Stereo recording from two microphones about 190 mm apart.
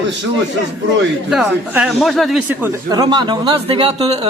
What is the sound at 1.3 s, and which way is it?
A man's voice, 5° right (ahead or behind).